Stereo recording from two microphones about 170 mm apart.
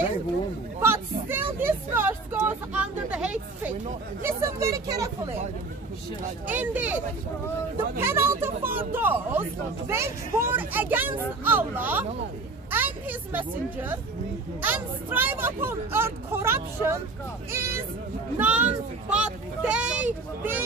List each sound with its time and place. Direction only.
0.7 s hubbub: 15° right (ahead or behind)
1.6 s speech: 10° right (ahead or behind)
4.4 s speech: 20° right (ahead or behind)
6.4 s speech: 10° right (ahead or behind)
8.0 s speech: 15° right (ahead or behind)